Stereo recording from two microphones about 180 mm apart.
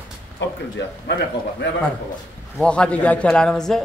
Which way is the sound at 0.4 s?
80° left.